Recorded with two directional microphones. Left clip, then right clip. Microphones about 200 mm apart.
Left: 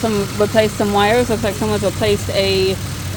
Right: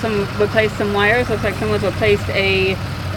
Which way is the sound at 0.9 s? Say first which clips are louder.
Left 1 dB; 35° left (ahead or behind).